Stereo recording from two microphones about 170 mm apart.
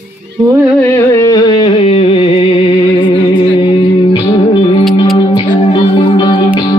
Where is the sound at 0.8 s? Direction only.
15° left (ahead or behind).